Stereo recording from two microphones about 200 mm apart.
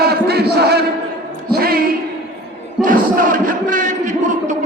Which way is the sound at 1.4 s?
50° right (ahead or behind).